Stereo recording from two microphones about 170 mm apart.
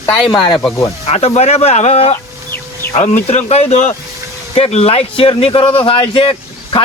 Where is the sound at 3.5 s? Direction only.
40° left (ahead or behind).